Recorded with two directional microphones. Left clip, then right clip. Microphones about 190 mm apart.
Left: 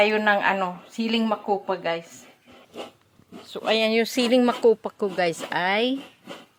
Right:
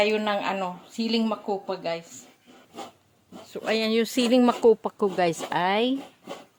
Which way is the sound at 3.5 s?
15° right (ahead or behind).